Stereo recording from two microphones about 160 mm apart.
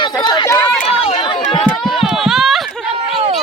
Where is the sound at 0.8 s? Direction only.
40° left (ahead or behind).